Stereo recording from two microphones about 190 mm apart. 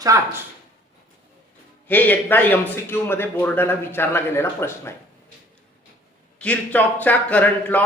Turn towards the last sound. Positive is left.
turn(degrees=10)  # may be behind; listen again after turning